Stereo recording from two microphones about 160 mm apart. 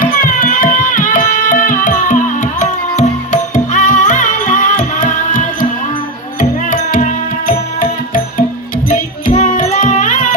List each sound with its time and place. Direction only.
0.0 s music: 60° left (ahead or behind)
6.7 s music: 55° left (ahead or behind)